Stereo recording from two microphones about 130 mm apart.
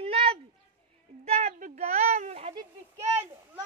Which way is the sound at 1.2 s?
55° right (ahead or behind).